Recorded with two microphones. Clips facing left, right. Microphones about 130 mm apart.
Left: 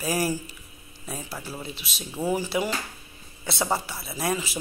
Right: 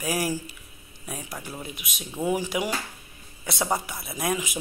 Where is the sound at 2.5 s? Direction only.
10° right (ahead or behind).